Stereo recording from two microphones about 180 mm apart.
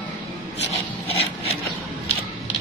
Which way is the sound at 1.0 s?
35° left (ahead or behind).